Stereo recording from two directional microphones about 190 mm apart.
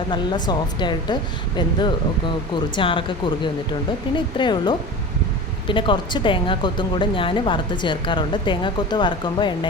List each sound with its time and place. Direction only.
0.1 s speech: 20° left (ahead or behind)